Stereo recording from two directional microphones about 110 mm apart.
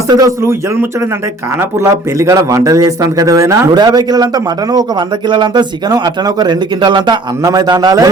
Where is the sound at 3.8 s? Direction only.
40° right (ahead or behind).